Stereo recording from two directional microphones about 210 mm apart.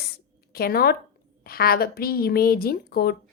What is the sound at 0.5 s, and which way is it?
A woman's voice, 45° left (ahead or behind).